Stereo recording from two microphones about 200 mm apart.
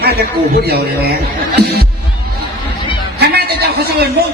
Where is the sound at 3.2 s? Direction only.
55° right (ahead or behind).